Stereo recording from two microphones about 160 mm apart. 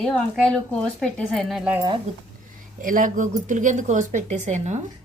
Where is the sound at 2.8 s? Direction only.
55° right (ahead or behind).